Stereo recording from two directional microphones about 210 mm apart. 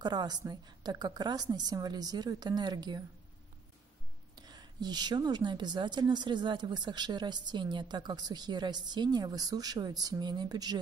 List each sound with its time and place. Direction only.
0.0 s a woman's voice: 20° right (ahead or behind)
4.4 s a woman's voice: 20° right (ahead or behind)